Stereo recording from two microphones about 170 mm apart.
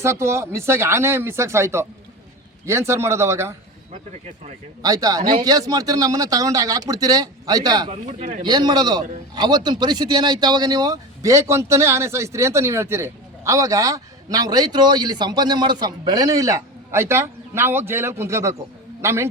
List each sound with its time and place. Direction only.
0.0 s speech: 15° right (ahead or behind)
4.8 s a man's voice: 20° right (ahead or behind)
8.2 s speech: 50° right (ahead or behind)
8.4 s a man's voice: 25° right (ahead or behind)